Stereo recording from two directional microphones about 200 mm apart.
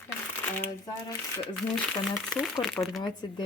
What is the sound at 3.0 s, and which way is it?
Speech, 20° left (ahead or behind).